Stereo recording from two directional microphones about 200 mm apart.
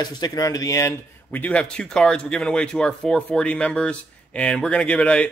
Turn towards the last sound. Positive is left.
turn(degrees=5)  # may be behind; listen again after turning